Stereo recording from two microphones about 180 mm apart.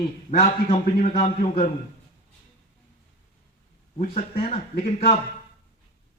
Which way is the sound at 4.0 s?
50° left (ahead or behind).